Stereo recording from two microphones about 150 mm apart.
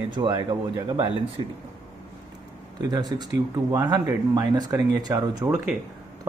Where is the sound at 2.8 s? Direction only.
25° right (ahead or behind).